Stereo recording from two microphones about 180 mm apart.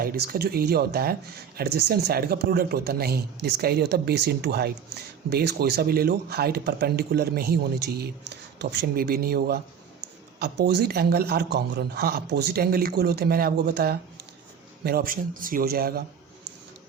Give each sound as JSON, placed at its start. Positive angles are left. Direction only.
{"t": 0.0, "sound": "speech", "side_deg": -55}